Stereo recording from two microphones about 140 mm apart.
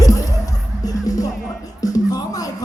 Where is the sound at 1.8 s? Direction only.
25° left (ahead or behind).